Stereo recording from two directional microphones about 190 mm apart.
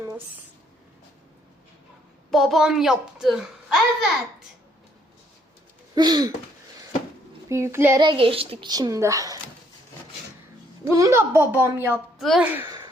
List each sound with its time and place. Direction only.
2.3 s a child's voice: centre (ahead or behind)
5.9 s a woman's voice: 20° right (ahead or behind)
7.5 s a woman's voice: 15° right (ahead or behind)
8.0 s a woman's voice: 30° right (ahead or behind)
10.8 s a woman's voice: 15° right (ahead or behind)